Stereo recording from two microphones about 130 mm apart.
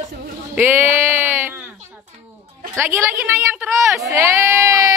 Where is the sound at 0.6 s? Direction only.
15° right (ahead or behind).